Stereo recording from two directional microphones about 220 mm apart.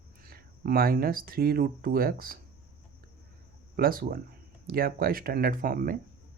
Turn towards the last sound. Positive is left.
turn(degrees=-40)  # may be behind; listen again after turning